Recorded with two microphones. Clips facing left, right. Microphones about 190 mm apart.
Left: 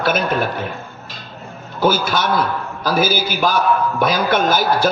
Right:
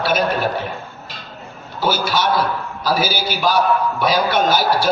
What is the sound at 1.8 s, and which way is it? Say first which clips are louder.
A man's voice: left 2 dB; 50° left (ahead or behind).